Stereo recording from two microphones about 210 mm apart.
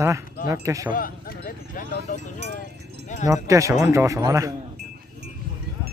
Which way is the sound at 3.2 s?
15° right (ahead or behind).